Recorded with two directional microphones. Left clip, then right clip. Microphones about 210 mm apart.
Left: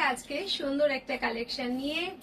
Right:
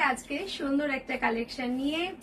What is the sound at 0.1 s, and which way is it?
Speech, 15° right (ahead or behind).